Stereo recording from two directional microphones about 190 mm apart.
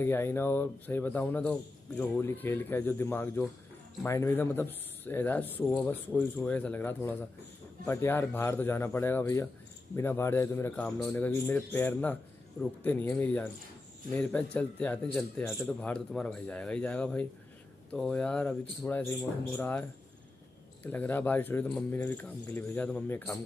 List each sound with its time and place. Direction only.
0.0 s a man's voice: 10° left (ahead or behind)